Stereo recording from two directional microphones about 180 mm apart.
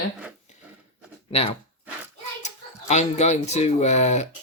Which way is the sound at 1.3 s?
35° left (ahead or behind).